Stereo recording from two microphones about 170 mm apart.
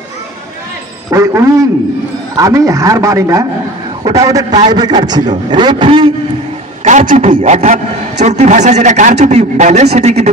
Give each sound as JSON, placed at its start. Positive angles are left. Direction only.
{"t": 1.1, "sound": "a man's voice", "side_deg": -15}
{"t": 6.8, "sound": "a man's voice", "side_deg": -45}